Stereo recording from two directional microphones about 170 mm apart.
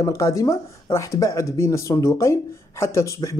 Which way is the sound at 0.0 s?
20° left (ahead or behind).